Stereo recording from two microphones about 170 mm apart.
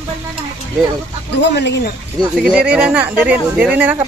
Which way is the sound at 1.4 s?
85° left.